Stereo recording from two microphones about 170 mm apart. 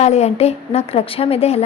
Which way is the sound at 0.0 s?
40° left (ahead or behind).